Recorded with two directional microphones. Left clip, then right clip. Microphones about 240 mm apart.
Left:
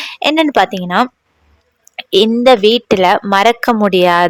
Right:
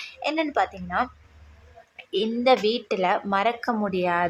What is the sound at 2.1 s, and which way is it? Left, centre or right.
Speech, left.